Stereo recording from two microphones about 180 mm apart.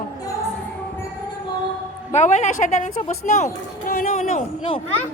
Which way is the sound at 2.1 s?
40° left (ahead or behind).